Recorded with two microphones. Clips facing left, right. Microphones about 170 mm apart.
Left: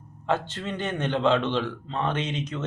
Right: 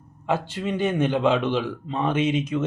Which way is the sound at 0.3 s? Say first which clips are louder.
Right 2 dB; 10° right (ahead or behind).